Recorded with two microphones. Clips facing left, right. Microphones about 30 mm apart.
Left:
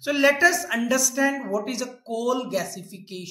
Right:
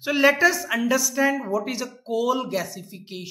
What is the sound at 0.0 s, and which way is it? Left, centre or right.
A woman's voice, centre.